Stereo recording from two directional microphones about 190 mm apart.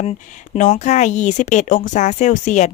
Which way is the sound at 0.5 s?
40° left (ahead or behind).